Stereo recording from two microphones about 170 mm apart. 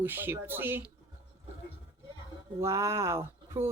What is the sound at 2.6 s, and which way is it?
Speech, 15° right (ahead or behind).